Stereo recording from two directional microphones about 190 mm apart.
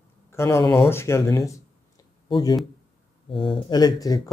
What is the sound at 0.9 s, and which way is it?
Speech, 15° left (ahead or behind).